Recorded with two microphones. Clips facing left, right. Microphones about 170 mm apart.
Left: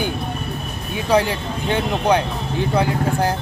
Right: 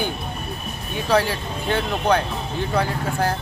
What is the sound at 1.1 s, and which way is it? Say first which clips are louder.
Speech: left 2 dB; 15° left (ahead or behind).